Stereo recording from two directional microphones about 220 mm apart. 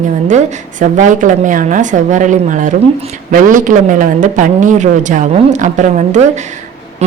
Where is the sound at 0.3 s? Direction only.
35° right (ahead or behind).